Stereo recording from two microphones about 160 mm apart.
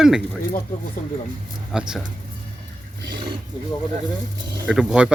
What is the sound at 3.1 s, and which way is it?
Roaring cats, 30° right (ahead or behind).